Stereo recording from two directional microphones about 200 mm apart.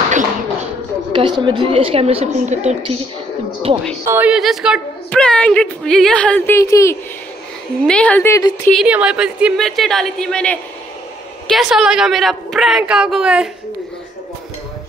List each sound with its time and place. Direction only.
1.1 s a woman's voice: 25° right (ahead or behind)
4.0 s a woman's voice: 10° right (ahead or behind); by 8.5 s 15° left (ahead or behind)
8.6 s a woman's voice: 5° right (ahead or behind)